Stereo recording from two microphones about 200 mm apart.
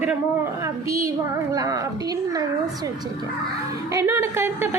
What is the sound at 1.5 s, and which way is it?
Speech, 20° right (ahead or behind).